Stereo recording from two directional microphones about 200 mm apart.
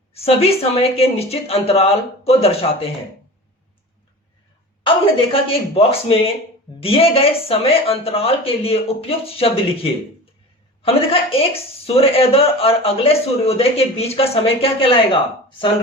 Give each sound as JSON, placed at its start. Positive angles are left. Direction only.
{"t": 0.1, "sound": "speech", "side_deg": 30}
{"t": 4.8, "sound": "speech", "side_deg": 25}
{"t": 10.8, "sound": "speech", "side_deg": 30}